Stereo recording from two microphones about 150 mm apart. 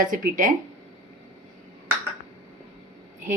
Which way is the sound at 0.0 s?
65° right (ahead or behind).